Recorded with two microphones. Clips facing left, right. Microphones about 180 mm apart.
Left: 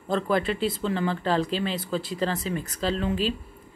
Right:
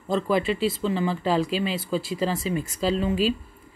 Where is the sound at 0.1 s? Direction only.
5° right (ahead or behind).